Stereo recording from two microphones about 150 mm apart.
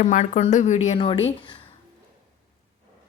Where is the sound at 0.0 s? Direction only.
55° left (ahead or behind).